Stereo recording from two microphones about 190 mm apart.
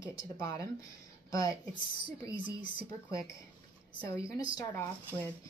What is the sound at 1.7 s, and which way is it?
Speech, 25° right (ahead or behind).